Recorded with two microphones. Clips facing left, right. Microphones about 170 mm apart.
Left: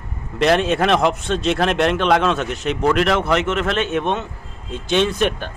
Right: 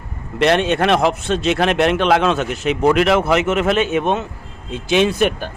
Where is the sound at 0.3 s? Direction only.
Centre (ahead or behind).